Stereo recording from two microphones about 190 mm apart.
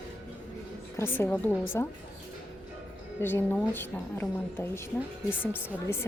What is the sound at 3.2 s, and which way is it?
Speech, 10° left (ahead or behind).